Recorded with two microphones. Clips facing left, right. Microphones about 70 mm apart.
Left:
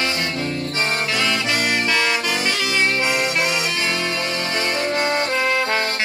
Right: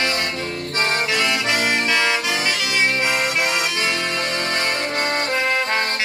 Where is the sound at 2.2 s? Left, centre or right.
Centre.